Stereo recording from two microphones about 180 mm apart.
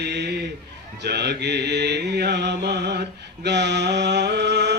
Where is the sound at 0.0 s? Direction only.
70° right (ahead or behind).